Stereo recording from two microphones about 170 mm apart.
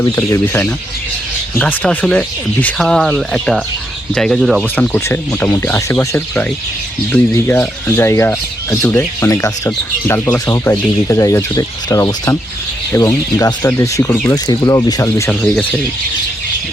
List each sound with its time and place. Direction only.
0.0 s speech: 15° left (ahead or behind); by 4.6 s centre (ahead or behind)
4.6 s speech: 10° left (ahead or behind)
15.4 s speech: 5° left (ahead or behind)